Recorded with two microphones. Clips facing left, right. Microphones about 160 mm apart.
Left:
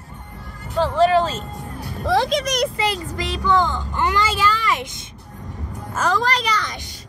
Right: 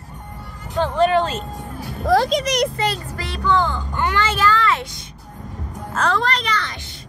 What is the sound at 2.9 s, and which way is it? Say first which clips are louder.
Speech: left 2 dB; 15° left (ahead or behind).